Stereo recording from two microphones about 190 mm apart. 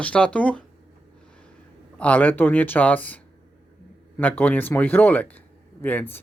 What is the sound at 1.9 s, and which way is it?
Speech, 5° left (ahead or behind).